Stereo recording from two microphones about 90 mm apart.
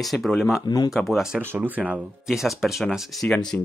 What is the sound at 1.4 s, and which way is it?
Speech, 20° right (ahead or behind).